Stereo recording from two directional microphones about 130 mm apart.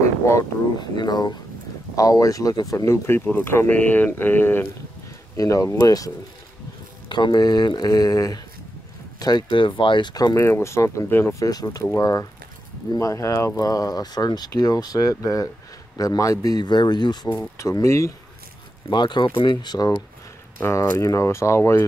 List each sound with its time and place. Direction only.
0.2 s a sound: 25° left (ahead or behind)
0.7 s speech: 35° left (ahead or behind)
18.9 s speech: 35° left (ahead or behind)
20.5 s speech: 20° left (ahead or behind)